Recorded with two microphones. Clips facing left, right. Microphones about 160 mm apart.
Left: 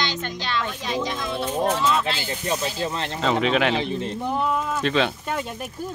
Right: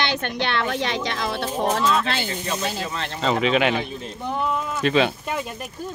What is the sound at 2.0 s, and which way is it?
Speech, 60° right (ahead or behind).